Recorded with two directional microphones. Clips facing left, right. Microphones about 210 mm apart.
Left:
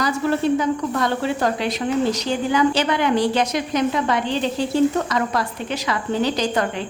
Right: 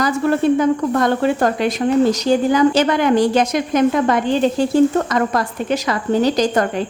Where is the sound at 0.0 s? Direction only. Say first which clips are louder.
Right 4 dB; 50° right (ahead or behind).